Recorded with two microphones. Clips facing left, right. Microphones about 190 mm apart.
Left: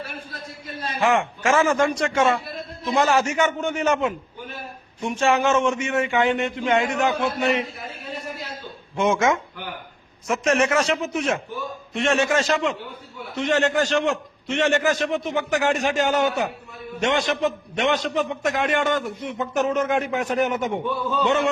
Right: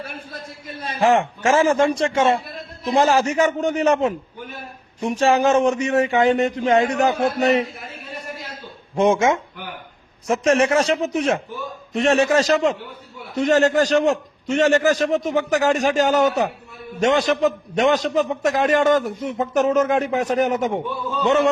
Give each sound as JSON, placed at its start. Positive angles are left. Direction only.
{"t": 0.9, "sound": "a man's voice", "side_deg": -35}
{"t": 9.0, "sound": "a man's voice", "side_deg": -30}